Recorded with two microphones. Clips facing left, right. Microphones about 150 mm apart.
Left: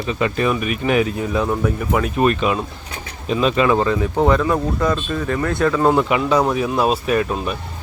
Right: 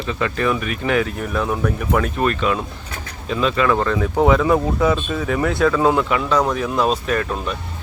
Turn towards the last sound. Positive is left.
turn(degrees=10)  # may be behind; listen again after turning